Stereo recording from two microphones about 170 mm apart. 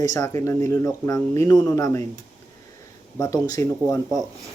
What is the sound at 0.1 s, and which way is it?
Speech, 20° left (ahead or behind).